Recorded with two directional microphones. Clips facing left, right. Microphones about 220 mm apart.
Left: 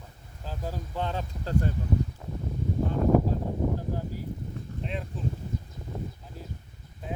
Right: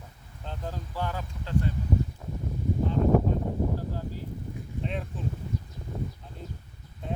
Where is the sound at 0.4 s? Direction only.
5° left (ahead or behind).